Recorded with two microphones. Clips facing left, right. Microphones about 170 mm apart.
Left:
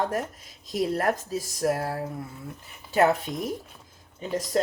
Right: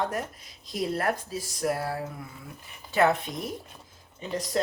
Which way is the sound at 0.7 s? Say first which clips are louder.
Left 3 dB; 45° left (ahead or behind).